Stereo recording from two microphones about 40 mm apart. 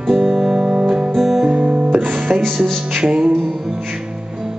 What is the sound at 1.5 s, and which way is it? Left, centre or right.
Guitar, right.